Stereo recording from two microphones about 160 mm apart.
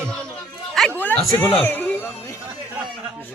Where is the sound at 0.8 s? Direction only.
10° left (ahead or behind).